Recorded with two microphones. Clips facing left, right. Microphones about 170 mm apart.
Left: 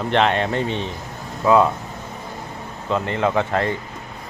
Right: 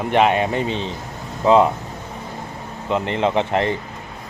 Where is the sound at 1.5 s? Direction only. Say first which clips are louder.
Right 1 dB; 20° right (ahead or behind).